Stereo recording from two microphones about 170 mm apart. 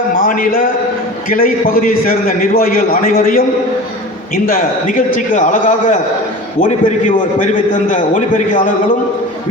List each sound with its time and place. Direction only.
0.2 s a man's voice: 55° left (ahead or behind)
4.4 s a man's voice: 55° left (ahead or behind)